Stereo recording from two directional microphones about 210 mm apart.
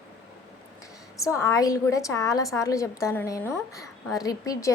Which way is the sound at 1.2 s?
15° left (ahead or behind).